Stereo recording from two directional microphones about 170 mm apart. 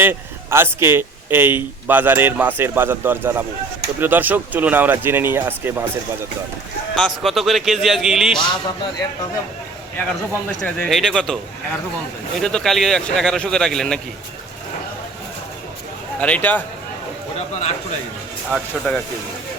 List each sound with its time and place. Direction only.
0.0 s a man's voice: 15° right (ahead or behind)
6.9 s speech: centre (ahead or behind)
8.4 s a man's voice: 25° left (ahead or behind)
10.6 s speech: 5° left (ahead or behind)
12.4 s speech: 5° left (ahead or behind)
16.2 s speech: 10° left (ahead or behind)
17.5 s a man's voice: 40° left (ahead or behind)
18.9 s speech: 10° left (ahead or behind)